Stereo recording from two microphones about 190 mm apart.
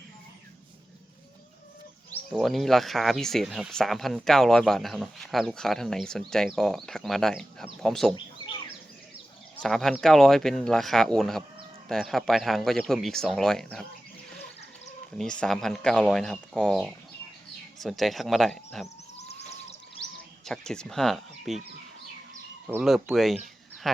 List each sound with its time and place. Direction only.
2.3 s speech: centre (ahead or behind)
9.6 s speech: centre (ahead or behind)
15.2 s speech: 5° left (ahead or behind)
19.2 s a sound: 35° left (ahead or behind)
20.0 s speech: 5° left (ahead or behind)
22.6 s speech: 5° right (ahead or behind)